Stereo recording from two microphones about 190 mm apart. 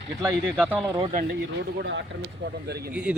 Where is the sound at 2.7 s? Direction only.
55° right (ahead or behind).